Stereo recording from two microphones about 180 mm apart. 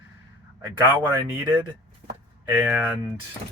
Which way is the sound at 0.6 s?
20° right (ahead or behind).